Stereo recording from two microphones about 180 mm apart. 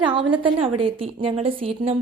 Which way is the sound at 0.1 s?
30° right (ahead or behind).